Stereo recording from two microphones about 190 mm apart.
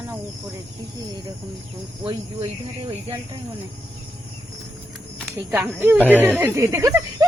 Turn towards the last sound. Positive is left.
turn(degrees=-15)  # may be behind; listen again after turning